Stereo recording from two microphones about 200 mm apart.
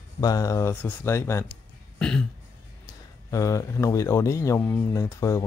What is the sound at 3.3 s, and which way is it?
Speech, 15° left (ahead or behind).